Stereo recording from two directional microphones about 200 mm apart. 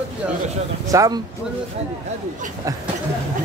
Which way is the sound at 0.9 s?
15° right (ahead or behind).